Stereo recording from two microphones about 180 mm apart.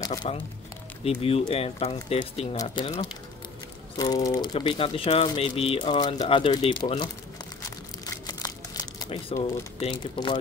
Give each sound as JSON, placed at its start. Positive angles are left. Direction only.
{"t": 0.0, "sound": "speech", "side_deg": 20}
{"t": 1.0, "sound": "speech", "side_deg": 30}
{"t": 2.6, "sound": "speech", "side_deg": 25}
{"t": 3.9, "sound": "speech", "side_deg": 20}
{"t": 8.3, "sound": "crumpling", "side_deg": 20}
{"t": 9.3, "sound": "speech", "side_deg": 35}